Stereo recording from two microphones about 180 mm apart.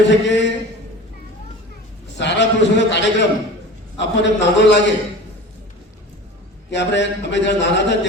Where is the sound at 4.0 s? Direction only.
80° left.